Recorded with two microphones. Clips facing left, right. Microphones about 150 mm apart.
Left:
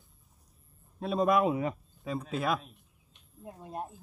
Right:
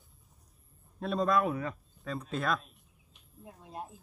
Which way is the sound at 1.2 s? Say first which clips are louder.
Left 3 dB; 20° left (ahead or behind).